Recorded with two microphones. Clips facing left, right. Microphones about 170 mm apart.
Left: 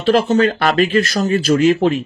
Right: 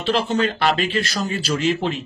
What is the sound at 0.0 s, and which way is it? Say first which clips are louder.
Speech: left 7 dB; 45° left (ahead or behind).